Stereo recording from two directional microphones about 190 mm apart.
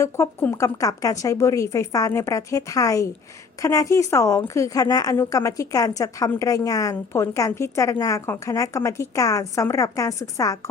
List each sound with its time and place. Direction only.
0.0 s a woman's voice: 15° left (ahead or behind)